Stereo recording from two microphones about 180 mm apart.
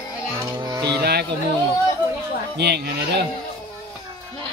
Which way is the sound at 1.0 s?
65° right (ahead or behind).